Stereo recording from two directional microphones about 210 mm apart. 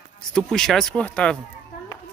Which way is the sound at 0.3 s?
5° left (ahead or behind).